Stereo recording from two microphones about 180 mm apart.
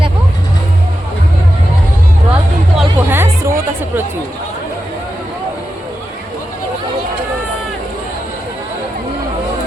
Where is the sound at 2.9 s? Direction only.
15° right (ahead or behind).